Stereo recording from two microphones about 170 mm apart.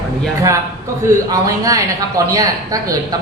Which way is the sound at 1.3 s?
20° right (ahead or behind).